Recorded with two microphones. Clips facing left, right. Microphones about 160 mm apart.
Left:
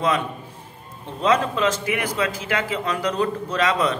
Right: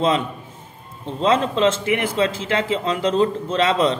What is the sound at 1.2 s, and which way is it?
A man's voice, 25° right (ahead or behind).